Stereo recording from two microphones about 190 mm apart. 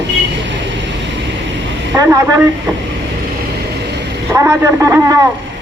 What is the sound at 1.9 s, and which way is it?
Speech, 15° right (ahead or behind).